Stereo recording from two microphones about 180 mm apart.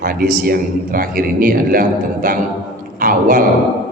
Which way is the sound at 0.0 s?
55° right (ahead or behind).